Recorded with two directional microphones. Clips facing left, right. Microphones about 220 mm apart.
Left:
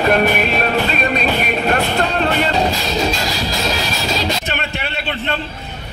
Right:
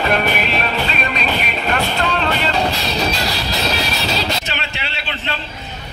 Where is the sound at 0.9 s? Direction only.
45° left (ahead or behind).